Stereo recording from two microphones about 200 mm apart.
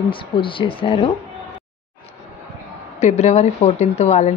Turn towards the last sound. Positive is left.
turn(degrees=35)  # may be behind; listen again after turning